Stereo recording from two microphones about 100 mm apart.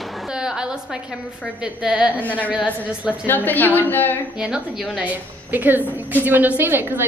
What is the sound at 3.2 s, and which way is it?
Speech, 20° left (ahead or behind).